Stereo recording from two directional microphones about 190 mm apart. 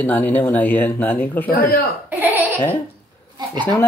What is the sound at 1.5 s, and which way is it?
Speech, 50° left (ahead or behind).